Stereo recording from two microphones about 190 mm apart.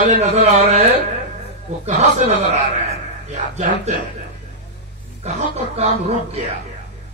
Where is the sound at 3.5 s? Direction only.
35° right (ahead or behind).